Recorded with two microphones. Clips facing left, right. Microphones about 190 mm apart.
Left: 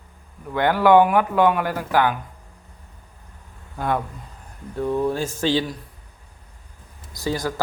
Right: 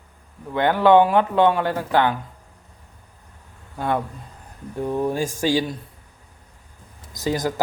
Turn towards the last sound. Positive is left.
turn(degrees=-20)  # may be behind; listen again after turning